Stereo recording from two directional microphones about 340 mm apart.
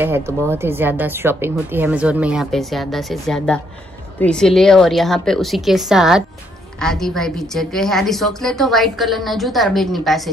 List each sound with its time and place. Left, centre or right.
0.5 s a woman's voice: centre